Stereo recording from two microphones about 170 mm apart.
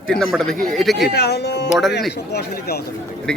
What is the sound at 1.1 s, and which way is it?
Speech, 75° left (ahead or behind).